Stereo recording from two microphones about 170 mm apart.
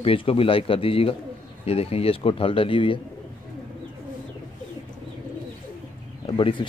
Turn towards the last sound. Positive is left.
turn(degrees=30)  # may be behind; listen again after turning